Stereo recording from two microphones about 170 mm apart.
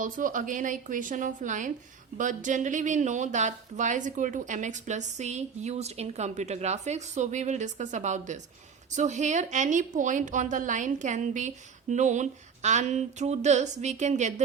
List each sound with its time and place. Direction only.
0.0 s speech: 50° right (ahead or behind)